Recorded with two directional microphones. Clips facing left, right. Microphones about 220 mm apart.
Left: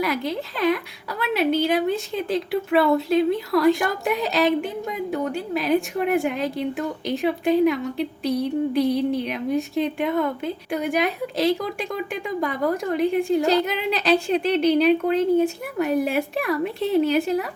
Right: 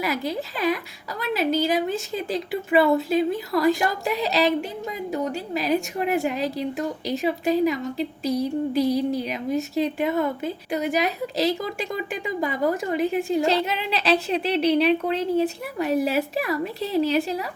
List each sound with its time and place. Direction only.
0.0 s a woman's voice: centre (ahead or behind)
14.3 s a woman's voice: 35° right (ahead or behind)
14.8 s a woman's voice: centre (ahead or behind)